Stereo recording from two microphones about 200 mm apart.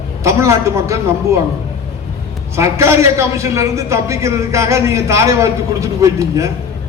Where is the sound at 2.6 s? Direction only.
15° right (ahead or behind).